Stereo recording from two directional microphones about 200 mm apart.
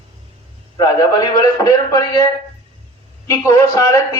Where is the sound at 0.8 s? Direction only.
15° left (ahead or behind).